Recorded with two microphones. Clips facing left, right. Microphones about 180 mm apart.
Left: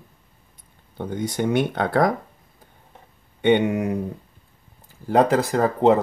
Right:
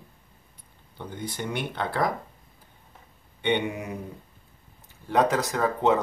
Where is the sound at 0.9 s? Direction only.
50° left (ahead or behind).